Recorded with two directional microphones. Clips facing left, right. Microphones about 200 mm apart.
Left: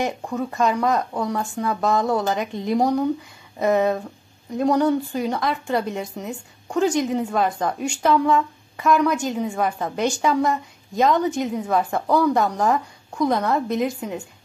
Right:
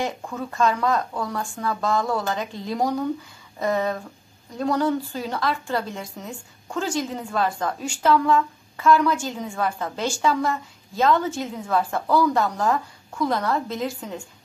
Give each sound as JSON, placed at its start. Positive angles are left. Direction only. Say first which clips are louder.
{"t": 0.0, "sound": "a woman's voice", "louder": "left 3 dB", "side_deg": 20}